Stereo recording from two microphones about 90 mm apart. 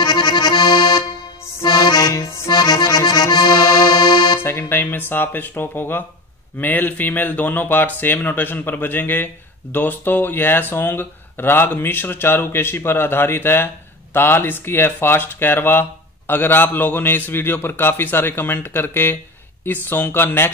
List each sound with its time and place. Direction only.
0.0 s accordion: 55° left (ahead or behind)
2.2 s accordion: 30° left (ahead or behind)
2.5 s accordion: 50° left (ahead or behind)
4.4 s speech: 25° left (ahead or behind)